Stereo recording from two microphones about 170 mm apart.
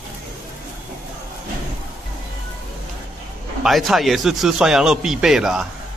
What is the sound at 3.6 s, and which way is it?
Speech, centre (ahead or behind).